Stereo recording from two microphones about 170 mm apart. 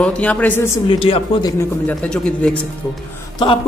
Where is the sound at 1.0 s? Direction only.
30° left (ahead or behind).